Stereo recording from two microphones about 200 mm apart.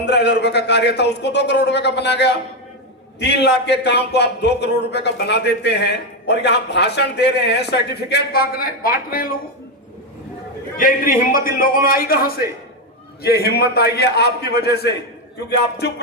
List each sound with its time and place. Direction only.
0.0 s a man's voice: 55° left (ahead or behind)
10.8 s a man's voice: 45° left (ahead or behind)